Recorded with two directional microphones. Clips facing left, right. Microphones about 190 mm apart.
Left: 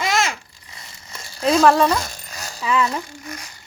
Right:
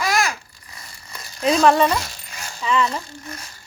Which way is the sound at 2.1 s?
40° left (ahead or behind).